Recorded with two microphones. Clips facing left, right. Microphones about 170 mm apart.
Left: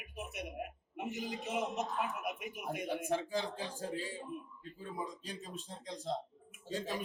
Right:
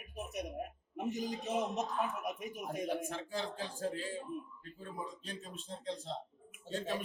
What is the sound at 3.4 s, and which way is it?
Speech, 15° left (ahead or behind).